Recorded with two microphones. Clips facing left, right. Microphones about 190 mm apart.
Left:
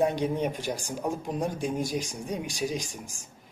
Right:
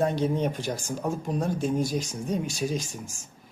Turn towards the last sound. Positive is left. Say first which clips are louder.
# right 2 dB
turn(degrees=15)  # may be behind; listen again after turning